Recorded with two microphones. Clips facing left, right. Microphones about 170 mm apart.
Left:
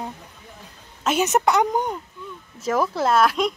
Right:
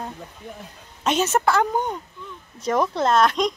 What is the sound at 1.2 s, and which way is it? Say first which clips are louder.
A woman's voice: left 2 dB; 15° left (ahead or behind).